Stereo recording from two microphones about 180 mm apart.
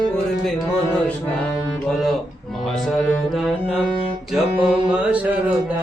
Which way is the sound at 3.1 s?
Centre (ahead or behind).